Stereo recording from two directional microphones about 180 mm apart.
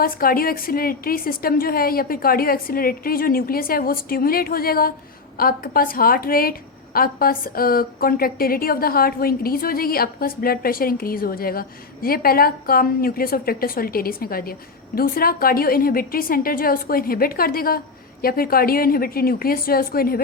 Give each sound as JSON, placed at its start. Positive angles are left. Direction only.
{"t": 0.0, "sound": "a woman's voice", "side_deg": 55}